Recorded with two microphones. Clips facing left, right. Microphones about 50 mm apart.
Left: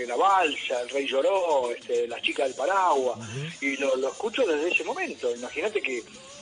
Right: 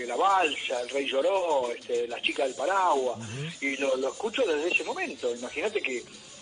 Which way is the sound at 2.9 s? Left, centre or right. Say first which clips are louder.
Left 2 dB; left.